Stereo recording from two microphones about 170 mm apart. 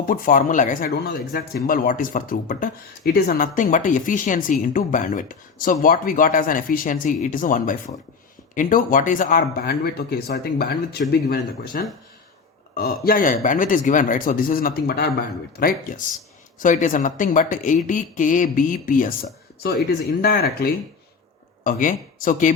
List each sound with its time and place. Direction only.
0.0 s speech: 55° left (ahead or behind)
21.6 s speech: 50° left (ahead or behind)